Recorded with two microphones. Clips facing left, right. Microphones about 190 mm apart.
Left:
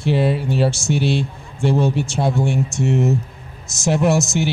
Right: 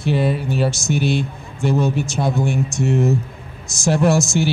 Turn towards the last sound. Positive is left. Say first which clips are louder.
# right 1 dB
turn(degrees=20)  # may be behind; listen again after turning